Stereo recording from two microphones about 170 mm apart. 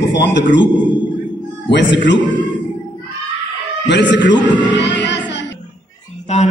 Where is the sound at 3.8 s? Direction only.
90° left.